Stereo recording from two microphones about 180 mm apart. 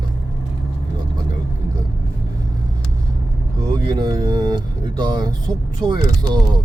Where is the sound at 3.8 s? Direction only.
20° right (ahead or behind).